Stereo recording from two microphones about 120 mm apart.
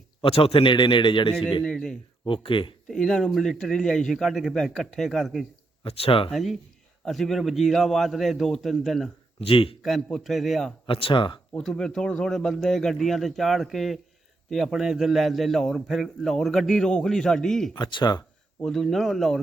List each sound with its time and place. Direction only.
0.2 s a man's voice: 55° left (ahead or behind)
1.6 s a man's voice: 5° left (ahead or behind)
2.2 s a man's voice: 45° left (ahead or behind)
2.8 s a man's voice: 5° left (ahead or behind)
5.8 s a man's voice: 50° left (ahead or behind)
6.3 s a man's voice: centre (ahead or behind)
9.4 s a man's voice: 50° left (ahead or behind)
9.8 s a man's voice: centre (ahead or behind)
10.8 s a man's voice: 50° left (ahead or behind)
11.5 s a man's voice: 5° left (ahead or behind)
17.7 s speech: 40° left (ahead or behind)
18.6 s a man's voice: 5° left (ahead or behind)